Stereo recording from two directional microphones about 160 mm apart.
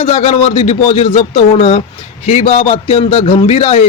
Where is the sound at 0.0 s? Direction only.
40° left (ahead or behind).